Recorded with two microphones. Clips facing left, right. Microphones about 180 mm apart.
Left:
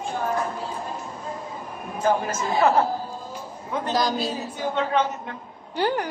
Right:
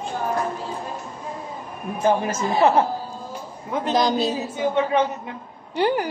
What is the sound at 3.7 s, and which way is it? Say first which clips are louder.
A woman's voice: right 3 dB; 20° right (ahead or behind).